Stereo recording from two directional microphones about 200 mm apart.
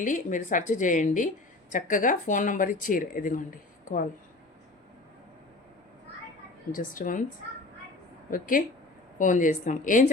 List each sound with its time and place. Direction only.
0.0 s speech: 40° left (ahead or behind)
6.7 s a woman's voice: 40° left (ahead or behind)
8.3 s a woman's voice: 45° left (ahead or behind)